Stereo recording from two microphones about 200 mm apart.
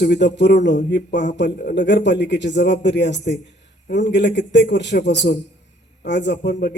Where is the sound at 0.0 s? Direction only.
60° left (ahead or behind).